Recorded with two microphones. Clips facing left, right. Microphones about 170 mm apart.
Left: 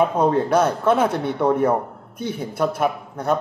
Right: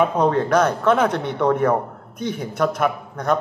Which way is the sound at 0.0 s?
10° left (ahead or behind).